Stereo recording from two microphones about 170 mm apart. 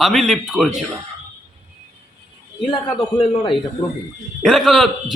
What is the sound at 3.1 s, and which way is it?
Speech, 30° left (ahead or behind).